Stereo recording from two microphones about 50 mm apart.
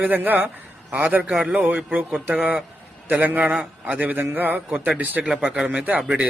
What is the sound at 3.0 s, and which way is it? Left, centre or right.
Speech, right.